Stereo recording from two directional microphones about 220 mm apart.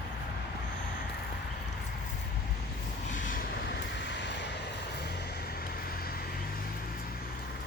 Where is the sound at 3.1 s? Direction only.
35° left (ahead or behind); by 4.5 s 55° left (ahead or behind).